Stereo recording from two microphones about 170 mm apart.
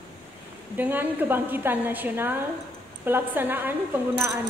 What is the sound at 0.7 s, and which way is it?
A woman's voice, 10° right (ahead or behind).